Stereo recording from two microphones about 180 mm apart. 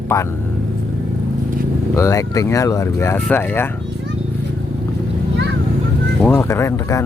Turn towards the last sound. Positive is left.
turn(degrees=15)  # may be behind; listen again after turning